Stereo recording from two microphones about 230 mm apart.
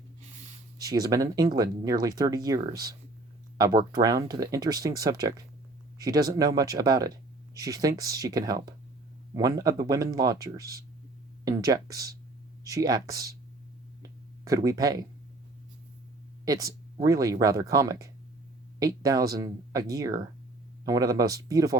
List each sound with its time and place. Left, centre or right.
0.8 s speech: centre
3.9 s speech: centre
14.4 s speech: centre
16.5 s speech: centre